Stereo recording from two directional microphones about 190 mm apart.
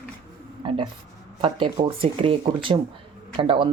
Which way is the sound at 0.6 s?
25° right (ahead or behind).